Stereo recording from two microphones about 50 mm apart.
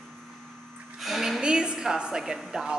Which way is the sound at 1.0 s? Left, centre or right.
Centre.